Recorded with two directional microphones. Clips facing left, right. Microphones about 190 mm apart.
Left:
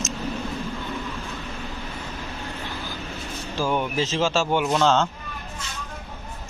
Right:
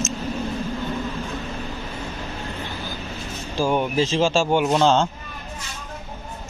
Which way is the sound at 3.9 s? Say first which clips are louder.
Right 4 dB; 30° right (ahead or behind).